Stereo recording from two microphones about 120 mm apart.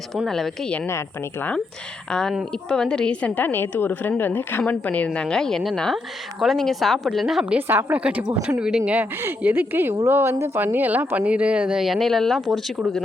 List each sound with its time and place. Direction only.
0.1 s a woman's voice: centre (ahead or behind)
0.9 s speech: 20° left (ahead or behind)
2.0 s a woman's voice: 5° left (ahead or behind)
7.7 s speech: 20° right (ahead or behind); by 12.7 s centre (ahead or behind)